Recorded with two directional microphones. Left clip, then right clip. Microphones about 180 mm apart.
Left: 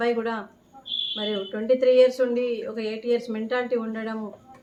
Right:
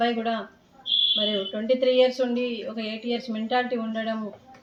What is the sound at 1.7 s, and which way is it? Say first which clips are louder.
A woman's voice: left 3 dB; 15° left (ahead or behind).